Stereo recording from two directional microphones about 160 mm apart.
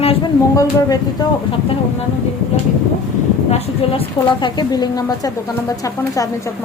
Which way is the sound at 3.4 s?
40° left (ahead or behind).